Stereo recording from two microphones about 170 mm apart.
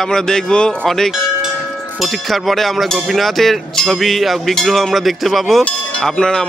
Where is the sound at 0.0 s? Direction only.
5° left (ahead or behind).